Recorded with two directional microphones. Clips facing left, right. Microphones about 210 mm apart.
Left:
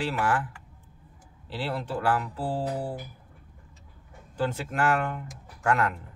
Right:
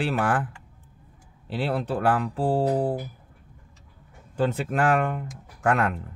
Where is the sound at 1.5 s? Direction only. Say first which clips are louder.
Right 5 dB; 55° right (ahead or behind).